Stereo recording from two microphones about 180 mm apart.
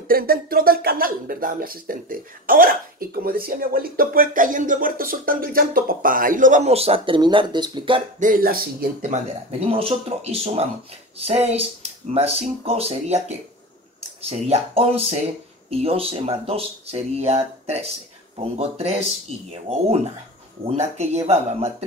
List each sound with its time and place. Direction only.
0.1 s speech: 55° right (ahead or behind); by 8.0 s 25° right (ahead or behind)
8.2 s speech: 50° right (ahead or behind)
9.1 s speech: 30° right (ahead or behind)